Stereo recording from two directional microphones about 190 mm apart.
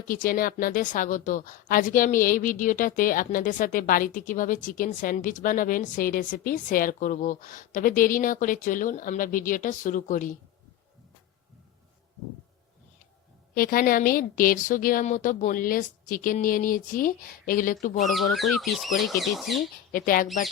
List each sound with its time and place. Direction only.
0.1 s a woman's voice: 50° left (ahead or behind)
13.5 s a woman's voice: 50° left (ahead or behind)
18.1 s speech: centre (ahead or behind)
19.9 s a woman's voice: 45° left (ahead or behind)